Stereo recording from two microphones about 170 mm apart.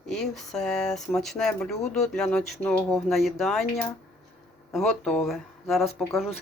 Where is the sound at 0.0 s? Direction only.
Centre (ahead or behind).